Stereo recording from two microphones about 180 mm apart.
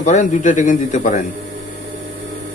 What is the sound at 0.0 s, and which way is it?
A man's voice, 45° left (ahead or behind).